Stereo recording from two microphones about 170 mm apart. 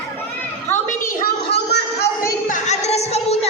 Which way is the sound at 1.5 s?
75° left (ahead or behind).